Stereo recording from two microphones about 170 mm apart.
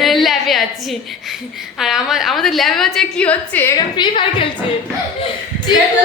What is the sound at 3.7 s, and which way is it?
Speech, 30° left (ahead or behind).